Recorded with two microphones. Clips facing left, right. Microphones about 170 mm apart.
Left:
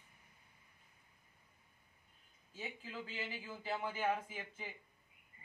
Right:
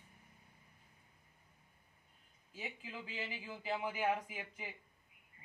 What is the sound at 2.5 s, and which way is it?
Speech, 10° right (ahead or behind).